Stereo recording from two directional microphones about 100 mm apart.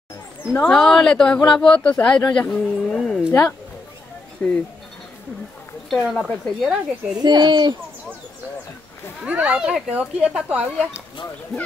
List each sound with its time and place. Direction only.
0.6 s speech: 5° left (ahead or behind)
3.0 s a woman's voice: centre (ahead or behind)
4.4 s speech: 15° left (ahead or behind)
5.9 s a woman's voice: centre (ahead or behind)
7.2 s speech: 45° right (ahead or behind)
9.2 s speech: 10° right (ahead or behind)
11.5 s a woman's voice: 5° left (ahead or behind)